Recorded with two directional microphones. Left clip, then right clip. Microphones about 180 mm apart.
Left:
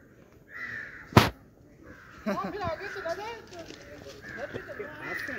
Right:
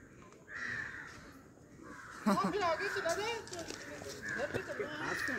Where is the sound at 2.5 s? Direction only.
50° left (ahead or behind).